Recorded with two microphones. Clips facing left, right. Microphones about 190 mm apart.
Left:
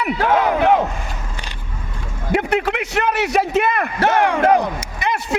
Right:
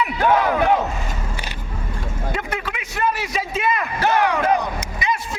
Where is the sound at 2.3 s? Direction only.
65° left (ahead or behind).